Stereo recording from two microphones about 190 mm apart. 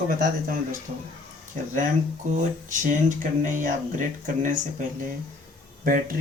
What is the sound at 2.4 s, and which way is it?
Speech, 40° right (ahead or behind).